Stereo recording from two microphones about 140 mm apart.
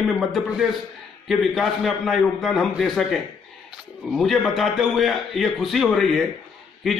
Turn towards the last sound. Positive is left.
turn(degrees=0)  # may be behind; listen again after turning